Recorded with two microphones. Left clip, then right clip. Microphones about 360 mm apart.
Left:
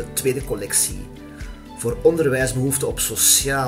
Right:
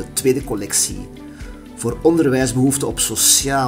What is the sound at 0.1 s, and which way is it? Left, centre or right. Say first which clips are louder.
Music: right 6 dB; centre.